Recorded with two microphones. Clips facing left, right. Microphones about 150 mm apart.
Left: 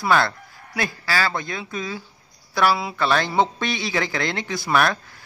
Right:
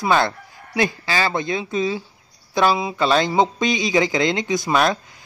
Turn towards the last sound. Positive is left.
turn(degrees=-20)  # may be behind; listen again after turning